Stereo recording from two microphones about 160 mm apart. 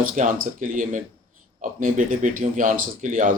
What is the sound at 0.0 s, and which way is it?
Speech, 55° right (ahead or behind).